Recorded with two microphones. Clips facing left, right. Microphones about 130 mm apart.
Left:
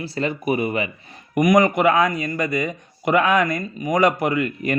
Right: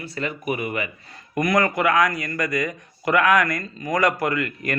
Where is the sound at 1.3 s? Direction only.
20° left (ahead or behind).